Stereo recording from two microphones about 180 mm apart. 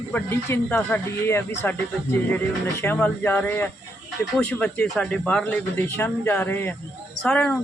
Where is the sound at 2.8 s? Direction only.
10° left (ahead or behind).